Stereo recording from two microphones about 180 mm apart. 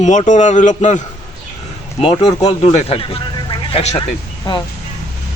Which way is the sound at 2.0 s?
25° left (ahead or behind).